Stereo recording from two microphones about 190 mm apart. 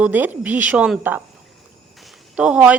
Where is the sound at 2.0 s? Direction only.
5° right (ahead or behind).